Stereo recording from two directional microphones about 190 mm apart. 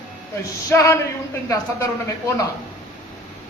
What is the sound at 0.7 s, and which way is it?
Speech, 15° left (ahead or behind).